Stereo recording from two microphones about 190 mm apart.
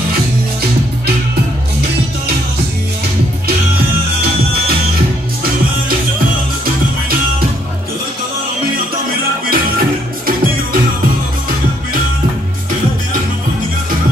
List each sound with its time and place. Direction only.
9.5 s music: 50° right (ahead or behind)